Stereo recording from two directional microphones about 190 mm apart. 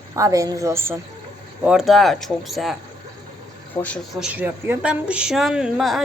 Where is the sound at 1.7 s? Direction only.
Centre (ahead or behind).